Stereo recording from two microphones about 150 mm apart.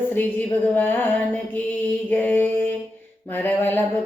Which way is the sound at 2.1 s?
10° left (ahead or behind).